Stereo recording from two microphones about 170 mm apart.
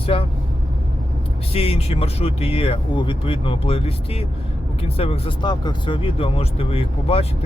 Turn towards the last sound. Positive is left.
turn(degrees=35)  # may be behind; listen again after turning